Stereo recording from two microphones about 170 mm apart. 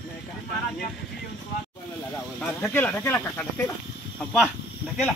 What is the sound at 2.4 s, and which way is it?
Speech, 10° left (ahead or behind).